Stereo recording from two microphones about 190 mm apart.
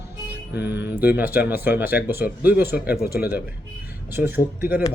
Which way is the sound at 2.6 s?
55° left (ahead or behind).